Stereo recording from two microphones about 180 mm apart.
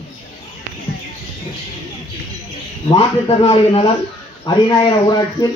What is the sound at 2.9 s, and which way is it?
Speech, 30° left (ahead or behind).